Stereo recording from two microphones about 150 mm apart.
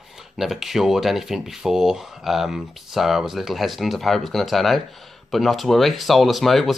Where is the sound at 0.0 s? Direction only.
Centre (ahead or behind).